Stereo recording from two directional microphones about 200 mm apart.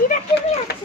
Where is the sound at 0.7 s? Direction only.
55° left (ahead or behind).